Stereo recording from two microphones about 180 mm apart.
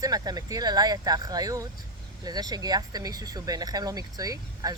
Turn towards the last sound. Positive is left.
turn(degrees=-20)  # may be behind; listen again after turning